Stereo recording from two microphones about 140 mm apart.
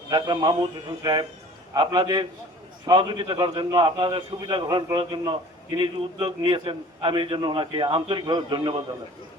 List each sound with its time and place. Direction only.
0.1 s a man's voice: 30° right (ahead or behind)